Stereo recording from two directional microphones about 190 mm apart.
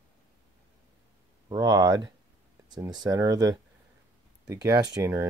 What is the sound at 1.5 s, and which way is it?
Speech, 20° right (ahead or behind).